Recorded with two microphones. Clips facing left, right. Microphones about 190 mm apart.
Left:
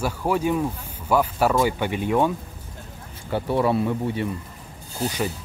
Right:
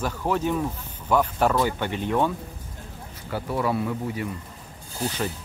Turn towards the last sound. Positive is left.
turn(degrees=15)  # may be behind; listen again after turning